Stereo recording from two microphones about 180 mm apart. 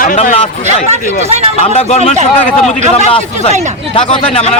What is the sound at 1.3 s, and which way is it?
Speech, 35° right (ahead or behind).